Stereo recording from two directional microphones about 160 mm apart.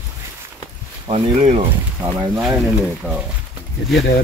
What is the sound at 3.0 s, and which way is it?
Speech, 10° right (ahead or behind).